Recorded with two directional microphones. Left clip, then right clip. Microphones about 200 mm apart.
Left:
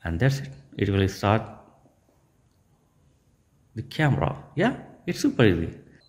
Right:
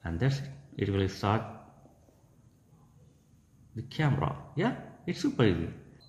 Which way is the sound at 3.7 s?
35° left (ahead or behind).